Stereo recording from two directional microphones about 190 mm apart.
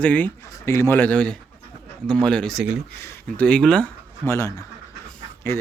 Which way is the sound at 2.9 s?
10° left (ahead or behind).